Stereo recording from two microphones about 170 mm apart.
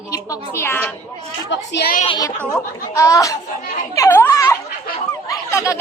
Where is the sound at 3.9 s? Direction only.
15° left (ahead or behind).